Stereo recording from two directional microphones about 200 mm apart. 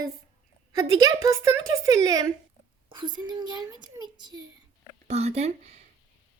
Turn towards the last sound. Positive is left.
turn(degrees=-30)  # may be behind; listen again after turning